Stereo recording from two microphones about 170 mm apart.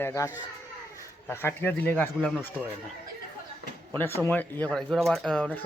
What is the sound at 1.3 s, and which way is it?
Speech, 15° left (ahead or behind).